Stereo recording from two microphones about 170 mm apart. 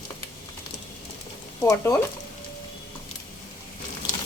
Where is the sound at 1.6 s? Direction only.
15° left (ahead or behind).